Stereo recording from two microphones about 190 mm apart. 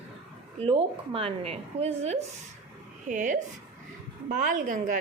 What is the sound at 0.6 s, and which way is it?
A woman's voice, 30° right (ahead or behind).